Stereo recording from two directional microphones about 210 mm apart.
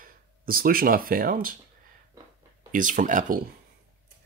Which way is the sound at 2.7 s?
40° right (ahead or behind).